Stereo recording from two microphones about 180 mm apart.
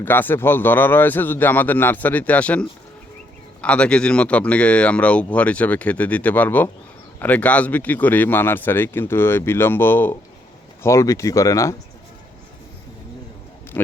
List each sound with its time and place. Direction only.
0.0 s speech: 10° left (ahead or behind)
13.7 s speech: 10° left (ahead or behind)